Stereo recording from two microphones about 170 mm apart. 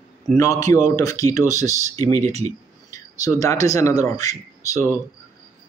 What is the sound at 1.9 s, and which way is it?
Speech, 45° right (ahead or behind).